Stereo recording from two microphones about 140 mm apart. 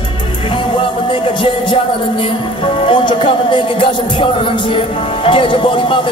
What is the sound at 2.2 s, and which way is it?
Speech, 40° left (ahead or behind).